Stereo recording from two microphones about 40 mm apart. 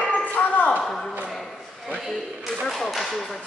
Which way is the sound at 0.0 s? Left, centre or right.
Left.